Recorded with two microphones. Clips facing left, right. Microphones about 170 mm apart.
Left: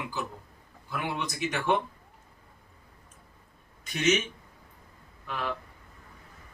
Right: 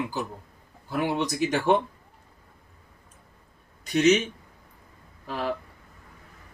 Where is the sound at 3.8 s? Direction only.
35° right (ahead or behind).